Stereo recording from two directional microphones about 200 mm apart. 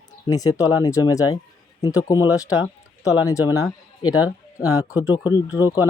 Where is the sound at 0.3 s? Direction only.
15° left (ahead or behind).